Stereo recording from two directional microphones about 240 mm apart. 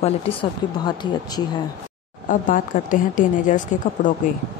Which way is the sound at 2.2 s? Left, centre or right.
Left.